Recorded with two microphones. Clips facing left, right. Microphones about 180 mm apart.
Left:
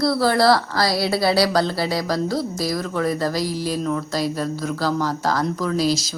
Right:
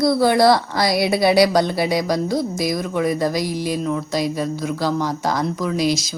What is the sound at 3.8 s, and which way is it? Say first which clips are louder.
A woman's voice: right 1 dB; 5° right (ahead or behind).